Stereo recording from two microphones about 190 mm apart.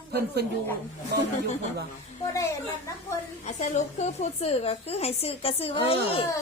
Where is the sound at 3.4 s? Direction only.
40° left (ahead or behind).